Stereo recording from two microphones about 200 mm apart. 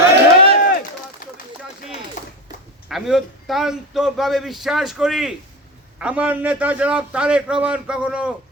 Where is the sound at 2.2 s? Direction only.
40° left (ahead or behind).